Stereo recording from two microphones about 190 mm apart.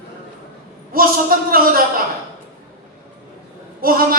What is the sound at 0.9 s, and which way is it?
Speech, 50° right (ahead or behind).